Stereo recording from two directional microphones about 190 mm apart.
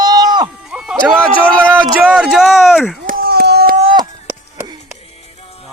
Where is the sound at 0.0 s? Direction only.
20° right (ahead or behind).